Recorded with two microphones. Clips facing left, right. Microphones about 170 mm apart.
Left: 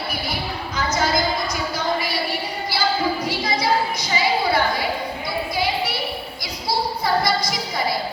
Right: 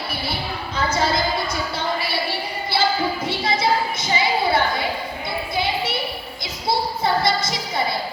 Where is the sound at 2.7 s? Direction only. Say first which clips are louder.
Right 1 dB; 25° right (ahead or behind).